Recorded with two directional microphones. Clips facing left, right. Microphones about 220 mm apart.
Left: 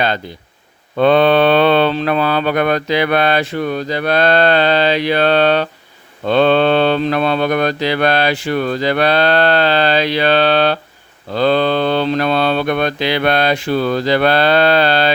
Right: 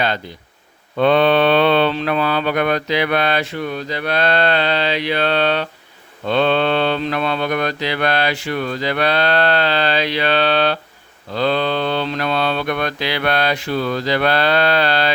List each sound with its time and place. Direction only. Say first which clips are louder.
0.9 s speech: left 3 dB; 40° left (ahead or behind)